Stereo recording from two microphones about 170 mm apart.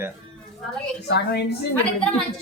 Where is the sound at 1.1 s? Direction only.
75° left (ahead or behind).